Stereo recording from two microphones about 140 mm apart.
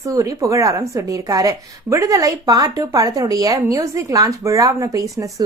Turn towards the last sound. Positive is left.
turn(degrees=-25)  # may be behind; listen again after turning